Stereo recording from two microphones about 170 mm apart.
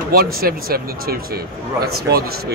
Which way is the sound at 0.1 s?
60° right (ahead or behind).